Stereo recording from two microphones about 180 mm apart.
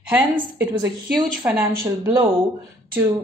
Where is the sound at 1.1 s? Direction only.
20° right (ahead or behind).